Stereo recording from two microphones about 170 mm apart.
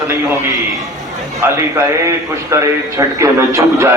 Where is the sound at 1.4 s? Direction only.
15° right (ahead or behind).